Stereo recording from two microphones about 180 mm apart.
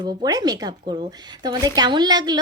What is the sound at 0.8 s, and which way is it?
Speech, 35° right (ahead or behind).